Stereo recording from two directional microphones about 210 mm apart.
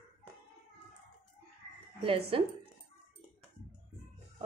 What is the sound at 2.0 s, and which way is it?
Speech, 25° right (ahead or behind).